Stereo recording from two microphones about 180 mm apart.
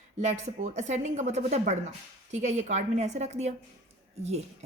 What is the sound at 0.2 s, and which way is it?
A woman's voice, 40° right (ahead or behind).